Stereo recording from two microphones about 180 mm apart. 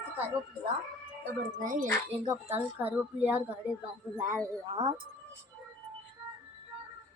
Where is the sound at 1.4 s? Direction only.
45° right (ahead or behind).